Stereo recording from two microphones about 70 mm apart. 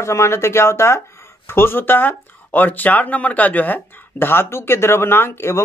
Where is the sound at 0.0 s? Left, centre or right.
Left.